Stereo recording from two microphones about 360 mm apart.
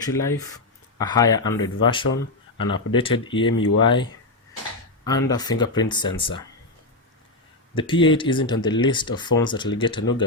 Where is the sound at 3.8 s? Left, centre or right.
Centre.